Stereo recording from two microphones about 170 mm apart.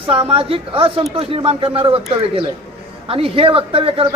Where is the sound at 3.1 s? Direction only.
30° right (ahead or behind).